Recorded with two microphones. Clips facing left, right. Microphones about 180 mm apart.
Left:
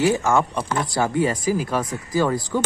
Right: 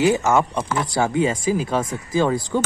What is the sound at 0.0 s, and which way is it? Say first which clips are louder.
Speech: right 1 dB; 20° right (ahead or behind).